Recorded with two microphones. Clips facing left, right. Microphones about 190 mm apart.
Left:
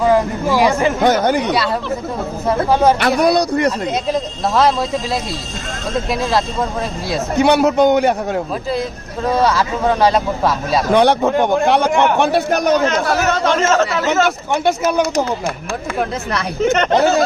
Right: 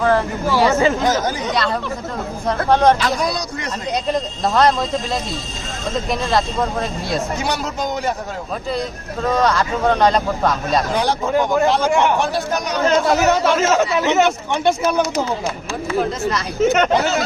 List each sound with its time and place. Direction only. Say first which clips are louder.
0.0 s speech: left 3 dB; 15° left (ahead or behind)
1.0 s a man's voice: left 5 dB; 65° left (ahead or behind)
2.6 s speech: even; 5° left (ahead or behind)
3.0 s a man's voice: left 7 dB; 60° left (ahead or behind)
4.1 s speech: even; 5° left (ahead or behind)
7.3 s a man's voice: left 11 dB; 65° left (ahead or behind)
9.3 s speech: left 2 dB; 5° left (ahead or behind)
10.9 s a man's voice: left 9 dB; 65° left (ahead or behind)
13.1 s speech: right 1 dB; 15° right (ahead or behind)
14.5 s speech: left 1 dB; 10° left (ahead or behind)
16.0 s a man's voice: right 2 dB; 60° left (ahead or behind)
16.6 s speech: left 1 dB; 5° right (ahead or behind)